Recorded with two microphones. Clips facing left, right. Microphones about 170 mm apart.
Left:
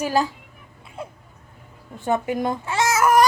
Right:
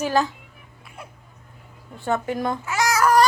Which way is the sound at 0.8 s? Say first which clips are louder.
Left 7 dB; 25° left (ahead or behind).